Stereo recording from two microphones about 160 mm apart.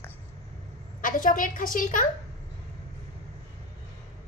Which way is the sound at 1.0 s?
55° left (ahead or behind).